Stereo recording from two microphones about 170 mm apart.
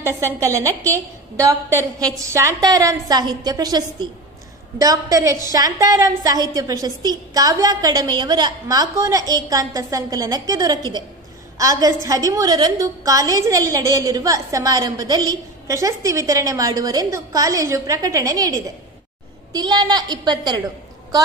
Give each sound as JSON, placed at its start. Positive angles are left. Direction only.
{"t": 0.0, "sound": "a woman's voice", "side_deg": -15}